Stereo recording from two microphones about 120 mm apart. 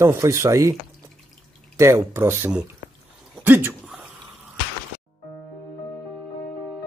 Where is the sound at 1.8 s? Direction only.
25° right (ahead or behind).